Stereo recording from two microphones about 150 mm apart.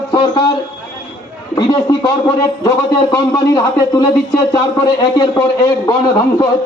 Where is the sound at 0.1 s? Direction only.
35° left (ahead or behind).